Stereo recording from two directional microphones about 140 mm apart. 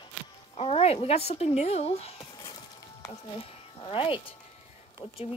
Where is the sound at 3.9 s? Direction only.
40° left (ahead or behind).